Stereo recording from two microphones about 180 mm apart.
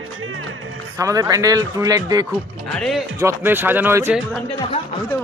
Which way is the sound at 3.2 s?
10° right (ahead or behind).